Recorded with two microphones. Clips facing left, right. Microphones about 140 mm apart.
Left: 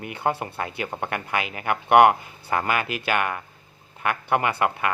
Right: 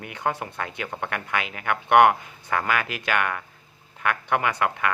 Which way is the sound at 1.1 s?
5° left (ahead or behind).